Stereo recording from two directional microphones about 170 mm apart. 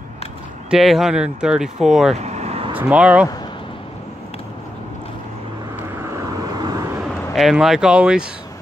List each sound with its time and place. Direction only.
0.7 s speech: centre (ahead or behind)
2.1 s vehicle: 40° right (ahead or behind)
2.7 s speech: 10° right (ahead or behind)
5.9 s vehicle: 15° right (ahead or behind)
7.3 s speech: centre (ahead or behind)